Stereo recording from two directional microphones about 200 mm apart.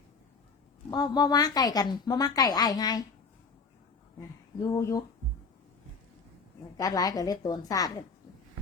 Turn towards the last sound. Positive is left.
turn(degrees=20)  # may be behind; listen again after turning